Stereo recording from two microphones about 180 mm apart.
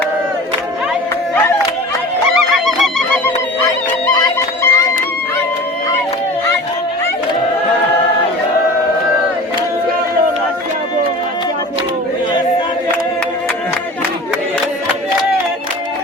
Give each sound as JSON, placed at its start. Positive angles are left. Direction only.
{"t": 2.6, "sound": "music", "side_deg": 0}
{"t": 4.6, "sound": "music", "side_deg": 20}